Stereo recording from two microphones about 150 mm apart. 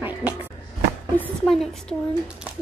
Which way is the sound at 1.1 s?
5° left (ahead or behind).